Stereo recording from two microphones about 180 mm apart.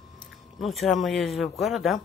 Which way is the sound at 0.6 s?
Centre (ahead or behind).